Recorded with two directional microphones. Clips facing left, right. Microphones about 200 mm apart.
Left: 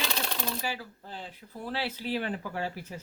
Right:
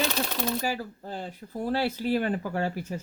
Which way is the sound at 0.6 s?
45° right (ahead or behind).